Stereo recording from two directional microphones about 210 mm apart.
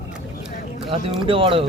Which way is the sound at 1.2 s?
25° right (ahead or behind).